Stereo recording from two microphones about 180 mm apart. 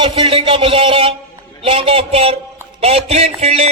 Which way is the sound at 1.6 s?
30° right (ahead or behind).